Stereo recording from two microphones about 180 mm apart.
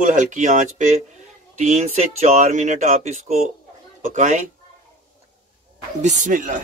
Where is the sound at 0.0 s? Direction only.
45° right (ahead or behind).